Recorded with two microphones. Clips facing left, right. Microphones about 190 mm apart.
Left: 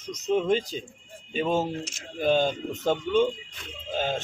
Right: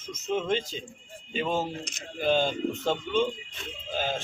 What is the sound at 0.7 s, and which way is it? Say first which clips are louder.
Speech: left 3 dB; 45° left (ahead or behind).